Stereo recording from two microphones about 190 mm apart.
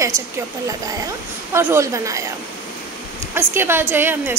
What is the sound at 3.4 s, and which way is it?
Speech, 10° right (ahead or behind).